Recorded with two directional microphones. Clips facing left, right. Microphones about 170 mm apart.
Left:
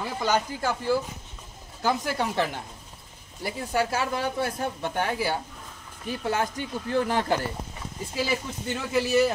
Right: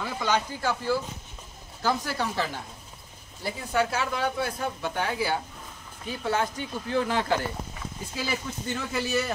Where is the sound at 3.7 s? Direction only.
40° left (ahead or behind).